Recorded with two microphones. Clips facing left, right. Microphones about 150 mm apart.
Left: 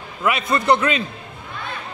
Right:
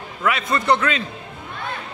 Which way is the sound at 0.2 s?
15° left (ahead or behind).